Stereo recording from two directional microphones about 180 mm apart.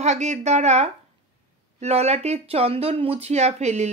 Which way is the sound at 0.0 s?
40° right (ahead or behind).